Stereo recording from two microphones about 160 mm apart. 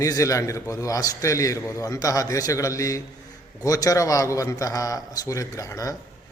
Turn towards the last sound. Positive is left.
turn(degrees=20)  # may be behind; listen again after turning